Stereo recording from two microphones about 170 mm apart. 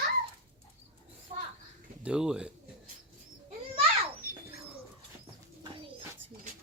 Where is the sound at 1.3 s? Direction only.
45° right (ahead or behind).